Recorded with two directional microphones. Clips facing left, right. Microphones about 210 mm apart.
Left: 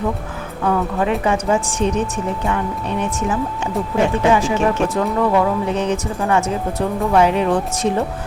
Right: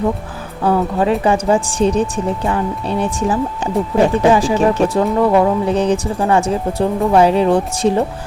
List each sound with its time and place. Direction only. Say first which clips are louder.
0.6 s a woman's voice: right 4 dB; 30° right (ahead or behind)